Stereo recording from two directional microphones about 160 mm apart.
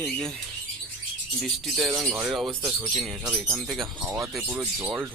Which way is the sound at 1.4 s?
Centre (ahead or behind).